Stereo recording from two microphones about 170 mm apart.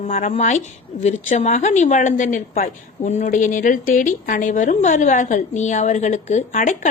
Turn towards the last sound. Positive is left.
turn(degrees=45)  # may be behind; listen again after turning